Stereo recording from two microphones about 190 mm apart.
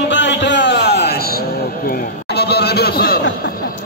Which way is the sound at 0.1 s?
70° left (ahead or behind).